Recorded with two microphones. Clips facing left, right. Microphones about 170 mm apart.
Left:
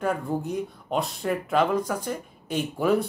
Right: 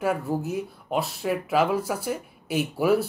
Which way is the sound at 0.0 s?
5° right (ahead or behind).